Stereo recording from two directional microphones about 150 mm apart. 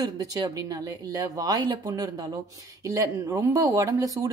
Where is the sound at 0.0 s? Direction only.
25° right (ahead or behind).